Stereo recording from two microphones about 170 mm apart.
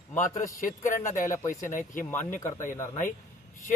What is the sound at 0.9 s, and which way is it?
Speech, 50° left (ahead or behind).